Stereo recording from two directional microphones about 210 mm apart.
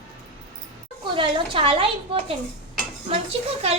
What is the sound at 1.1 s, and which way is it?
A woman's voice, 25° right (ahead or behind).